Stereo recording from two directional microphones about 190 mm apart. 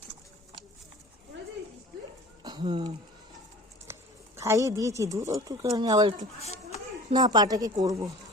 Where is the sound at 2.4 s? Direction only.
25° right (ahead or behind).